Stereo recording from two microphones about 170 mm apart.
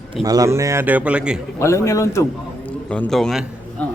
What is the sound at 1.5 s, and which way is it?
A man's voice, 15° left (ahead or behind).